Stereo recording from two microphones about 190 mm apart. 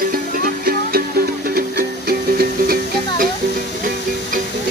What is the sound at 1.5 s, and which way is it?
Music, 55° right (ahead or behind).